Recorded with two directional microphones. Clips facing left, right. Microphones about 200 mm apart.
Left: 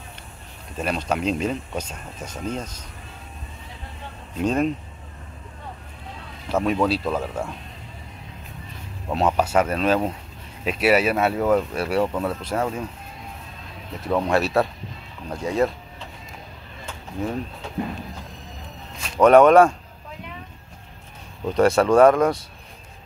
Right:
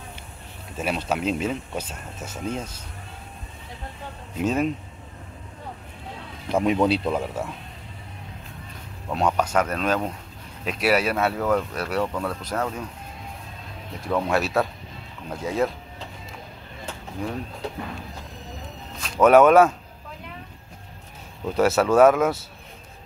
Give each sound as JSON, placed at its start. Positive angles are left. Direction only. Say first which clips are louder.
{"t": 0.7, "sound": "speech", "louder": "left 1 dB", "side_deg": -5}
{"t": 4.4, "sound": "speech", "louder": "left 2 dB", "side_deg": -5}
{"t": 6.5, "sound": "speech", "louder": "right 1 dB", "side_deg": -20}
{"t": 9.1, "sound": "speech", "louder": "left 2 dB", "side_deg": 5}
{"t": 12.3, "sound": "speech", "louder": "left 3 dB", "side_deg": 25}
{"t": 12.5, "sound": "speech", "louder": "left 2 dB", "side_deg": 10}
{"t": 14.0, "sound": "speech", "louder": "left 2 dB", "side_deg": 0}
{"t": 18.9, "sound": "a sound", "louder": "left 1 dB", "side_deg": 10}
{"t": 19.2, "sound": "speech", "louder": "left 2 dB", "side_deg": -5}
{"t": 21.5, "sound": "speech", "louder": "left 2 dB", "side_deg": -5}